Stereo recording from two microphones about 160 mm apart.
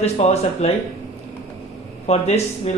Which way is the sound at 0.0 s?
40° left (ahead or behind).